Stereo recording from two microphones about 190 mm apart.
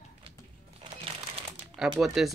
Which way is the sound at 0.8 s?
30° right (ahead or behind).